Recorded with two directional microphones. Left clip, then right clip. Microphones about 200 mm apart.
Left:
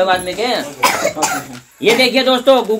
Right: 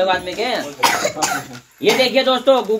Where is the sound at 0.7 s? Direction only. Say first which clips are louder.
Left 1 dB; 35° right (ahead or behind).